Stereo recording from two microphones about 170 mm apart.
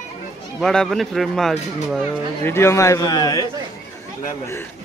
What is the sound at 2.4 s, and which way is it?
A man's voice, 15° left (ahead or behind).